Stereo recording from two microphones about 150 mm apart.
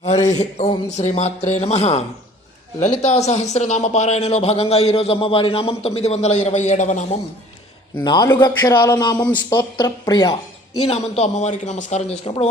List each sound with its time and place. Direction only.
0.0 s a sound: 50° left (ahead or behind)
0.3 s speech: 50° left (ahead or behind)
8.0 s a man's voice: 30° left (ahead or behind)
10.8 s speech: 45° left (ahead or behind)